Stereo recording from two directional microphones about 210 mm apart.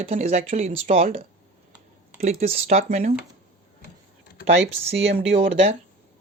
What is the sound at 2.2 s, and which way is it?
Speech, 30° right (ahead or behind).